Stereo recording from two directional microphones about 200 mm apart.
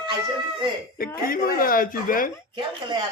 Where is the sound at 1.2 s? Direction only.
45° left (ahead or behind).